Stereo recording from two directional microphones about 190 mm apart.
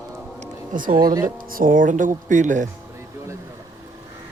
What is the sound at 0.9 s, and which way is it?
Speech, 20° right (ahead or behind).